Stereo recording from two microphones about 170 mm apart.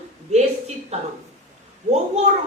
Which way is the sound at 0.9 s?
40° right (ahead or behind).